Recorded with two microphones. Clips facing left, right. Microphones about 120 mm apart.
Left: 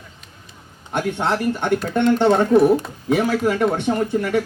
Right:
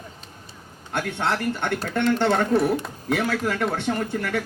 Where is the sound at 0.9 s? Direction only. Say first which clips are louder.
Left 4 dB; 20° left (ahead or behind).